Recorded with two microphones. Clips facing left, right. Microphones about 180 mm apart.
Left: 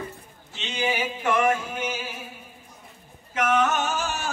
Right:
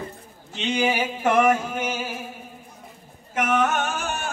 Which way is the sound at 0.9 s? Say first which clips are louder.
Right 3 dB; 40° right (ahead or behind).